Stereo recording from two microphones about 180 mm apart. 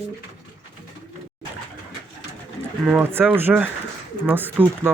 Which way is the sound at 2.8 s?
10° right (ahead or behind).